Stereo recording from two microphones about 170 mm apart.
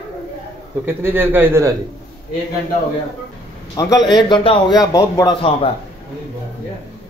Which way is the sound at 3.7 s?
25° left (ahead or behind).